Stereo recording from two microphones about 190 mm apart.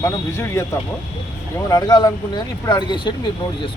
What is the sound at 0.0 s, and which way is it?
Speech, 15° left (ahead or behind).